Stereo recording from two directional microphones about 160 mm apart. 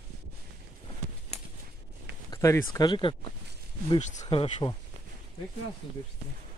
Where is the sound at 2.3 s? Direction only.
20° left (ahead or behind).